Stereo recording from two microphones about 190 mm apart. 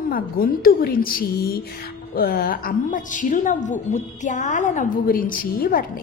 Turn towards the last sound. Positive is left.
turn(degrees=50)  # may be behind; listen again after turning